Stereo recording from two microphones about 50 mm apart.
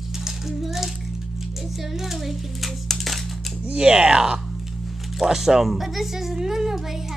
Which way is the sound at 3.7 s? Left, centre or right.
Right.